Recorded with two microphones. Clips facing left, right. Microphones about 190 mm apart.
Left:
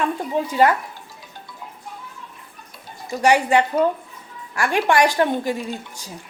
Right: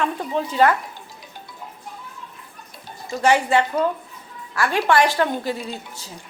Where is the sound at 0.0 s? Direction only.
10° left (ahead or behind).